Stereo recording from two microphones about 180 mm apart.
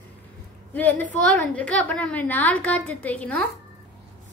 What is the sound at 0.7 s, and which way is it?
A woman's voice, 10° left (ahead or behind).